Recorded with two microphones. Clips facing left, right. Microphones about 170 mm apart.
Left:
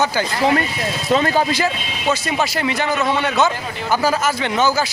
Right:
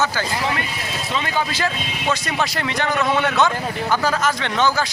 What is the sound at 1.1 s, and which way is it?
Speech, 40° left (ahead or behind).